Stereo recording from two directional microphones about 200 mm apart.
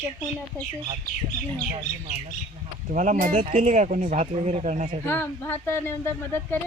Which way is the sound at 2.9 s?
40° right (ahead or behind).